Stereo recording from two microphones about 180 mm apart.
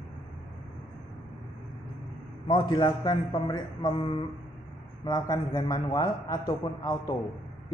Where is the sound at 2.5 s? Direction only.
25° left (ahead or behind).